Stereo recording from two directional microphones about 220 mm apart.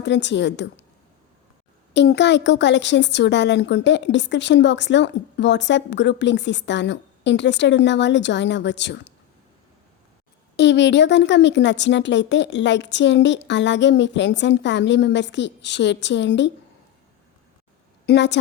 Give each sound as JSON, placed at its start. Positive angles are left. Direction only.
{"t": 0.0, "sound": "speech", "side_deg": 55}
{"t": 1.9, "sound": "speech", "side_deg": 50}
{"t": 10.6, "sound": "speech", "side_deg": 55}
{"t": 18.0, "sound": "a woman's voice", "side_deg": 50}